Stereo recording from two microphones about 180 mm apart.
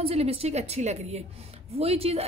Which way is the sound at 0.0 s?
35° right (ahead or behind).